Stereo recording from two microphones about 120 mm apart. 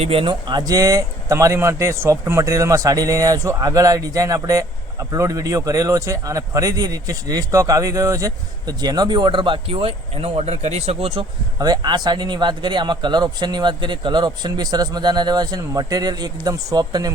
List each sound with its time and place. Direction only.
0.0 s speech: 50° right (ahead or behind)
11.6 s speech: 35° right (ahead or behind)